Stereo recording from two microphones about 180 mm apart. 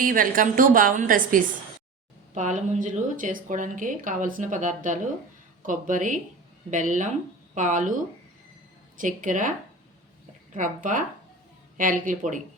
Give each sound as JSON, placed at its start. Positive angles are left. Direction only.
{"t": 0.0, "sound": "speech", "side_deg": -50}
{"t": 9.0, "sound": "speech", "side_deg": -45}